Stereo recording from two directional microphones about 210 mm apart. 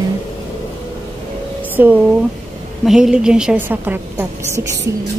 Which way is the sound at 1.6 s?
10° right (ahead or behind).